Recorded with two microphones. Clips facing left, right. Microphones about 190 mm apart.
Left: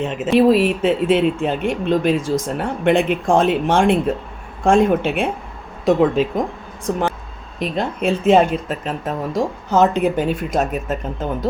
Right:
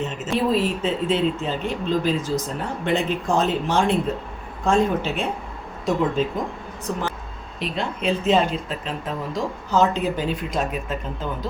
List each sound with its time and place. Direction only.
0.0 s speech: 70° left (ahead or behind); by 5.1 s 55° left (ahead or behind)
5.8 s speech: 65° left (ahead or behind)
6.9 s speech: 55° left (ahead or behind)